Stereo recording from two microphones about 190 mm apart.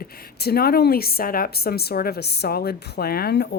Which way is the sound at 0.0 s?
55° left (ahead or behind).